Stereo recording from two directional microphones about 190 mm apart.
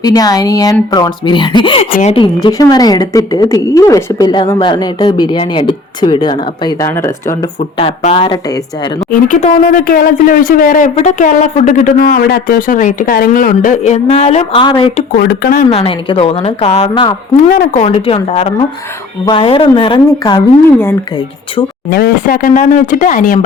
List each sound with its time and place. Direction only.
0.0 s a woman's voice: 20° left (ahead or behind)
1.9 s a woman's voice: 40° left (ahead or behind)
2.1 s a woman's voice: 25° left (ahead or behind)
7.8 s a woman's voice: 30° left (ahead or behind)
9.2 s speech: 45° left (ahead or behind); by 15.0 s 25° left (ahead or behind)
15.2 s speech: 55° left (ahead or behind)
15.7 s a woman's voice: 30° left (ahead or behind)
17.3 s a woman's voice: 40° left (ahead or behind); by 20.4 s 25° left (ahead or behind)
21.8 s speech: 55° left (ahead or behind)